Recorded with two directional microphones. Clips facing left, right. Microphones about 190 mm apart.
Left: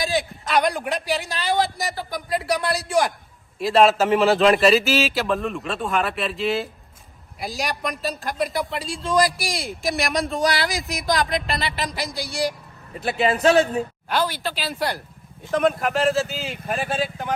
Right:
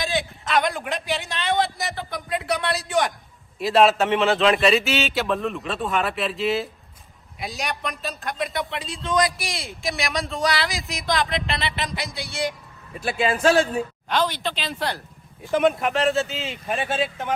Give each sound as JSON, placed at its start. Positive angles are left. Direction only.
{"t": 0.0, "sound": "a sound", "side_deg": 0}
{"t": 1.2, "sound": "speech", "side_deg": 35}
{"t": 1.5, "sound": "a man's voice", "side_deg": 0}
{"t": 13.0, "sound": "speech", "side_deg": 25}
{"t": 14.1, "sound": "speech", "side_deg": 10}
{"t": 15.4, "sound": "a man's voice", "side_deg": 0}